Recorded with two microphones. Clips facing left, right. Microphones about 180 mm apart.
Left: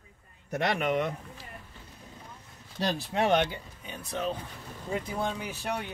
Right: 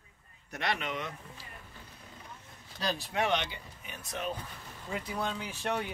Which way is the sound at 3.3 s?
50° left (ahead or behind).